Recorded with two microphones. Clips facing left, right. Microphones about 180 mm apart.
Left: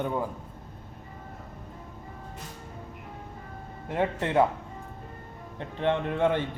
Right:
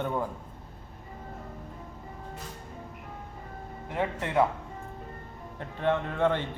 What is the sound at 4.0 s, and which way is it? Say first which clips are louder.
Speech: left 3 dB; 25° left (ahead or behind).